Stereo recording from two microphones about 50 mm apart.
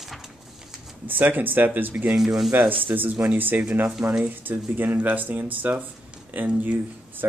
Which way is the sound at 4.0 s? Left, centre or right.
Right.